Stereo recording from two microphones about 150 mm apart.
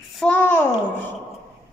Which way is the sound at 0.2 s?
10° left (ahead or behind).